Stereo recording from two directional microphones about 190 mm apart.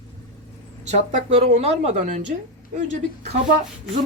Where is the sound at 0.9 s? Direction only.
35° right (ahead or behind).